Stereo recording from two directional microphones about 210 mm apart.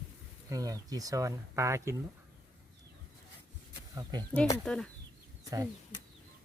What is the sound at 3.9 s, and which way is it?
Speech, 20° right (ahead or behind).